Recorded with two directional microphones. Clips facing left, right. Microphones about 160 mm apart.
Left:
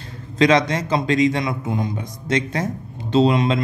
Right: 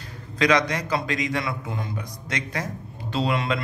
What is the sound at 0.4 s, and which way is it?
A man's voice, 25° left (ahead or behind).